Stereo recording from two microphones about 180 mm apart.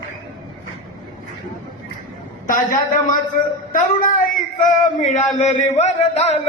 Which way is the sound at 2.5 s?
50° left (ahead or behind).